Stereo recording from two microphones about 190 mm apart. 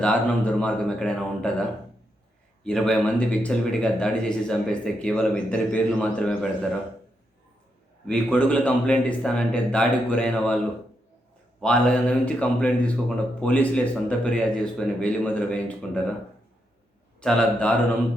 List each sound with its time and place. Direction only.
0.0 s speech: 5° left (ahead or behind)
2.6 s speech: 5° left (ahead or behind)
8.0 s speech: 5° left (ahead or behind)
11.6 s speech: 5° left (ahead or behind)
17.2 s speech: 5° left (ahead or behind)